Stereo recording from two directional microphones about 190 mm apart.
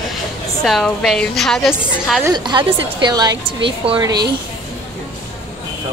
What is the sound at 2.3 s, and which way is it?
A woman's voice, 25° right (ahead or behind).